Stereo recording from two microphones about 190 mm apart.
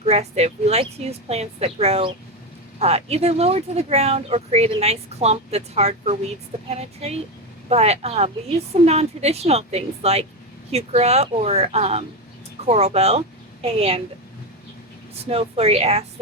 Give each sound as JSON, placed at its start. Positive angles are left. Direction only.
{"t": 0.0, "sound": "speech", "side_deg": -35}
{"t": 15.1, "sound": "speech", "side_deg": -30}